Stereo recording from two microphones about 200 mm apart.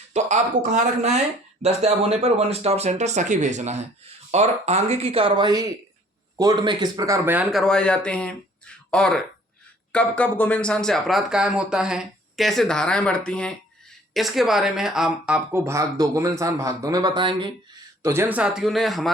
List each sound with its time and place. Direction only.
0.1 s speech: 35° right (ahead or behind); by 7.6 s 10° right (ahead or behind)
7.6 s speech: 5° left (ahead or behind); by 17.5 s 25° right (ahead or behind)
18.0 s speech: 10° right (ahead or behind)